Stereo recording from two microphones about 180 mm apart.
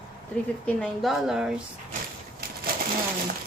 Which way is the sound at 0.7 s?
5° left (ahead or behind).